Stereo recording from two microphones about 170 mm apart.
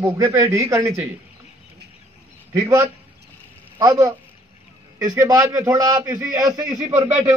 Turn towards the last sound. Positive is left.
turn(degrees=-15)  # may be behind; listen again after turning